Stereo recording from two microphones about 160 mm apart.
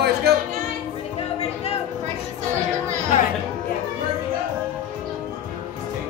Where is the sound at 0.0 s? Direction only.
85° right.